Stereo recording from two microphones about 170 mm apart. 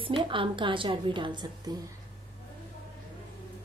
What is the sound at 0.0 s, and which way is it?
A woman's voice, 30° right (ahead or behind).